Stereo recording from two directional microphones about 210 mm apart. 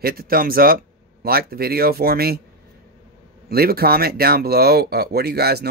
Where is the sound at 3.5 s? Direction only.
45° right (ahead or behind).